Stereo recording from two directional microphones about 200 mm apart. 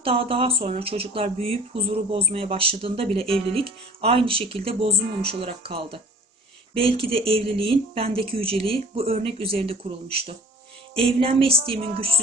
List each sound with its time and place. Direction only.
0.0 s speech: 30° right (ahead or behind)